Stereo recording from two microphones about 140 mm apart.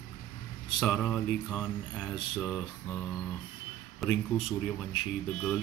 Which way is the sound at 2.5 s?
20° left (ahead or behind).